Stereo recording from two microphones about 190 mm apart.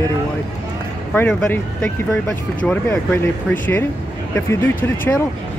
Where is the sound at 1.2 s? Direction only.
10° left (ahead or behind).